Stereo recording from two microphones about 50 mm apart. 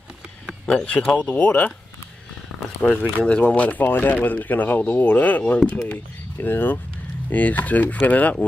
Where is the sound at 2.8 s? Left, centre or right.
Centre.